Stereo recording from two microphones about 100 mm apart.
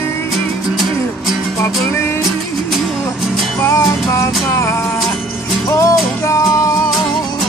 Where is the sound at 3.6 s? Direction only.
30° left (ahead or behind).